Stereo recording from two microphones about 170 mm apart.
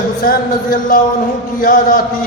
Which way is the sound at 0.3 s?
55° left (ahead or behind).